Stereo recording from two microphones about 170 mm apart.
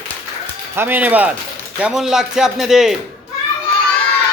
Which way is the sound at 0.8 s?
10° right (ahead or behind).